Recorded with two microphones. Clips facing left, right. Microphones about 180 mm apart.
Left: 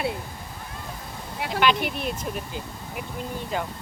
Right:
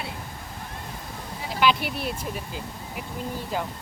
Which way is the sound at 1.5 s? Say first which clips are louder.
Even; 5° right (ahead or behind).